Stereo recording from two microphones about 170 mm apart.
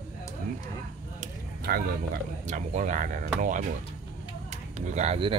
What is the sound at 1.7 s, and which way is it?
Speech, 65° right (ahead or behind).